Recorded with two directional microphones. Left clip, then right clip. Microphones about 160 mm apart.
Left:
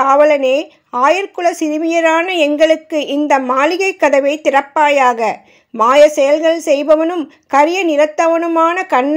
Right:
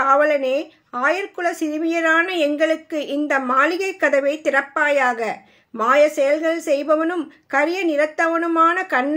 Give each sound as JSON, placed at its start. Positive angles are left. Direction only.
{"t": 0.0, "sound": "speech", "side_deg": 30}